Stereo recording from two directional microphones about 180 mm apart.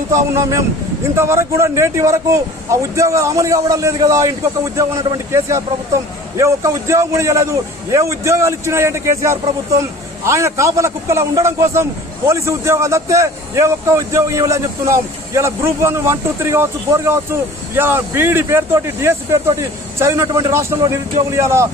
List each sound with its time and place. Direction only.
0.1 s a man's voice: 15° right (ahead or behind)